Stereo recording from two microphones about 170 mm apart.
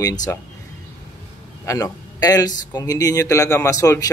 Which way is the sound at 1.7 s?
20° left (ahead or behind).